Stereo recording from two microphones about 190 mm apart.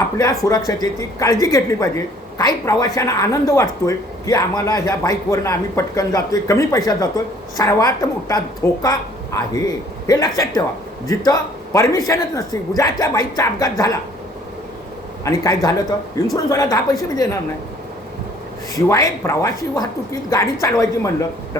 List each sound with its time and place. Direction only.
0.2 s a woman's voice: 20° left (ahead or behind)
15.2 s speech: 20° left (ahead or behind)
18.7 s speech: 15° left (ahead or behind)